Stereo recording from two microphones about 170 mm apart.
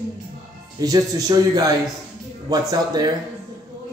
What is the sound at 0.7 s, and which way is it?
Speech, 20° right (ahead or behind).